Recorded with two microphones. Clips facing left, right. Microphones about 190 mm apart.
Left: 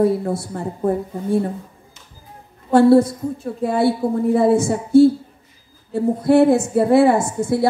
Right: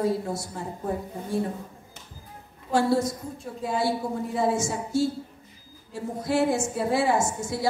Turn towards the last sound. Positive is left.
turn(degrees=60)  # may be behind; listen again after turning